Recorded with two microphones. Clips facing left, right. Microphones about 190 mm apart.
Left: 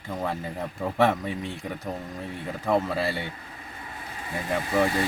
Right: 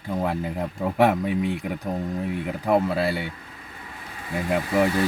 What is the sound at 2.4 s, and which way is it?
Speech, 10° right (ahead or behind).